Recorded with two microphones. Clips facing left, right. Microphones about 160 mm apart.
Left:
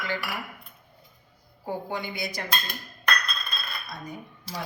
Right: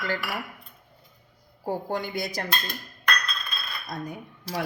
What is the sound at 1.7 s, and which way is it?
Speech, 40° right (ahead or behind).